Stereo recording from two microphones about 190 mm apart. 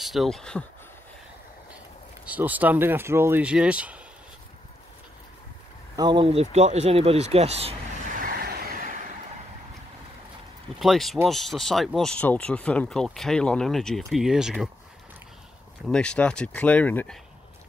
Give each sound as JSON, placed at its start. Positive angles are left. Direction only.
{"t": 0.0, "sound": "speech", "side_deg": 0}
{"t": 2.2, "sound": "speech", "side_deg": -10}
{"t": 5.9, "sound": "a sound", "side_deg": -25}
{"t": 10.8, "sound": "speech", "side_deg": 0}
{"t": 15.9, "sound": "speech", "side_deg": 5}